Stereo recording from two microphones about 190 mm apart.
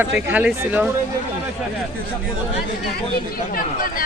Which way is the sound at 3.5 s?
45° left (ahead or behind).